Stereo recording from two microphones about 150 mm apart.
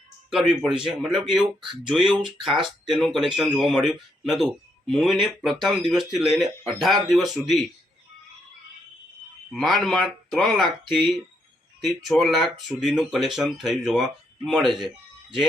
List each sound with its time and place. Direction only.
0.3 s speech: 5° right (ahead or behind)
9.5 s speech: centre (ahead or behind)